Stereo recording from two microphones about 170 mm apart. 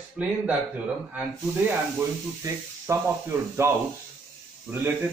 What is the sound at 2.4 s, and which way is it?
A man's voice, 15° right (ahead or behind).